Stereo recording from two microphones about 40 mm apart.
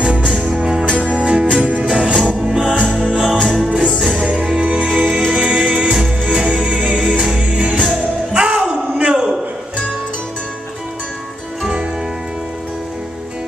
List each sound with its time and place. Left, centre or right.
0.3 s music: right
11.6 s music: right